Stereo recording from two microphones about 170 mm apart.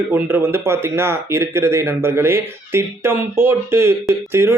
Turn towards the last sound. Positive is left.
turn(degrees=-15)  # may be behind; listen again after turning